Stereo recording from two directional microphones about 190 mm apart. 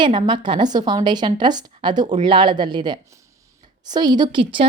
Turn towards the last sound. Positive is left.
turn(degrees=-25)  # may be behind; listen again after turning